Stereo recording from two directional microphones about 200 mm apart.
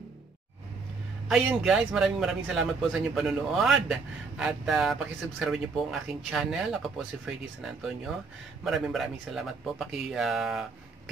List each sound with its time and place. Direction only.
1.3 s a man's voice: 5° right (ahead or behind)